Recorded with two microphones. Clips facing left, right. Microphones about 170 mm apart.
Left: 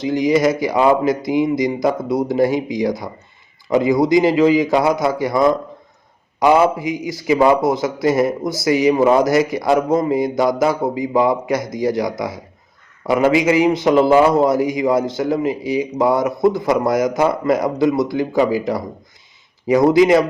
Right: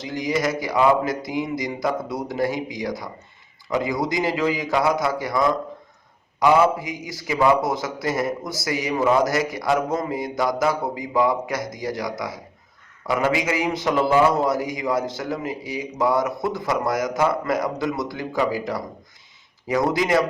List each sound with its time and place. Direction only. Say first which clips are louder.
0.0 s a man's voice: left 9 dB; 20° left (ahead or behind)